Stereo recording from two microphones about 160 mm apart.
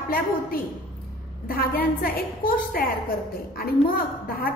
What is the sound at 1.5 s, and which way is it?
A woman's voice, 65° left (ahead or behind).